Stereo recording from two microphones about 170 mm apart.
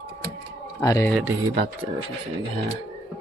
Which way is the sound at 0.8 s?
20° left (ahead or behind).